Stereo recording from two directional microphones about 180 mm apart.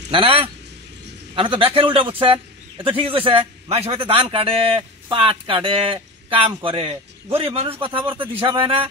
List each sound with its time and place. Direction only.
0.1 s a man's voice: 30° right (ahead or behind)